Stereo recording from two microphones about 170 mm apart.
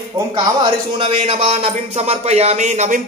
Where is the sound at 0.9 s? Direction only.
30° right (ahead or behind).